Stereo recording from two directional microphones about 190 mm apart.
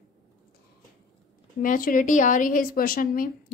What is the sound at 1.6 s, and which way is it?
A woman's voice, 45° left (ahead or behind).